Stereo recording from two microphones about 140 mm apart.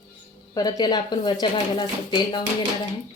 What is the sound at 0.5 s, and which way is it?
A woman's voice, 30° left (ahead or behind).